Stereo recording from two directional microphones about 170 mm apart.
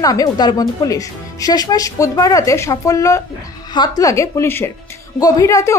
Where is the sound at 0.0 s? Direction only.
20° left (ahead or behind).